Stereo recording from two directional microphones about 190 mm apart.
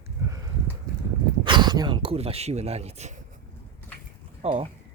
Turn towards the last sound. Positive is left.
turn(degrees=-30)  # may be behind; listen again after turning